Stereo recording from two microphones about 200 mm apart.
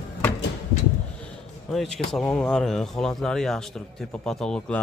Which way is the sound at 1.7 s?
Centre (ahead or behind).